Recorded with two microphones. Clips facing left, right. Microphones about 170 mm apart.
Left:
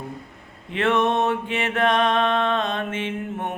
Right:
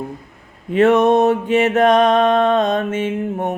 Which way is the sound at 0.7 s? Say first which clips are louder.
Right 9 dB; 40° right (ahead or behind).